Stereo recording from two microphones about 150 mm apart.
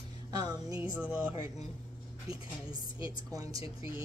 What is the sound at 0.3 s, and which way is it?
Music, 25° right (ahead or behind).